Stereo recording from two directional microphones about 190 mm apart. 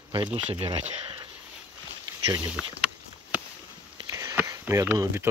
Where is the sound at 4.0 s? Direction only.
20° right (ahead or behind).